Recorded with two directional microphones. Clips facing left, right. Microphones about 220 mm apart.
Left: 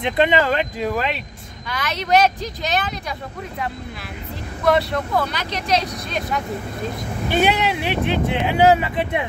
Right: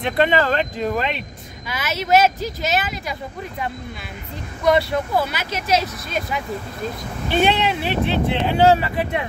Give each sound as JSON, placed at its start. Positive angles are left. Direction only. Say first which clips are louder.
{"t": 0.0, "sound": "speech", "louder": "even", "side_deg": 15}
{"t": 7.2, "sound": "speech", "louder": "even", "side_deg": 10}